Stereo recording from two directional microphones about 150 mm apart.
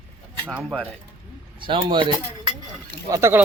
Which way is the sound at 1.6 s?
35° right (ahead or behind).